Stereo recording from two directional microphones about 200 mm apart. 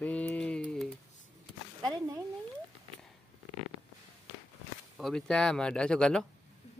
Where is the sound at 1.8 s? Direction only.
15° right (ahead or behind).